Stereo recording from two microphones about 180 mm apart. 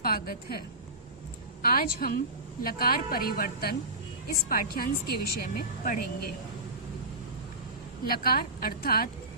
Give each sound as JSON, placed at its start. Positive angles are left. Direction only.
{"t": 0.0, "sound": "a woman's voice", "side_deg": 55}
{"t": 1.6, "sound": "a woman's voice", "side_deg": 55}
{"t": 8.0, "sound": "a woman's voice", "side_deg": 55}